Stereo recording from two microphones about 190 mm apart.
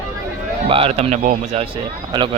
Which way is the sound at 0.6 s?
30° right (ahead or behind).